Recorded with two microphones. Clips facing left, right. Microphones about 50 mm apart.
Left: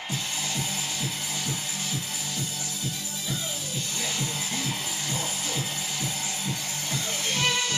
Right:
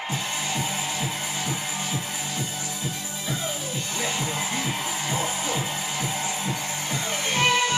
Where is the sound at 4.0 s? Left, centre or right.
Centre.